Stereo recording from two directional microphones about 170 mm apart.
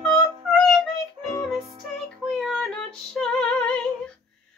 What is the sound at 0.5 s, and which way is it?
Child singing, centre (ahead or behind).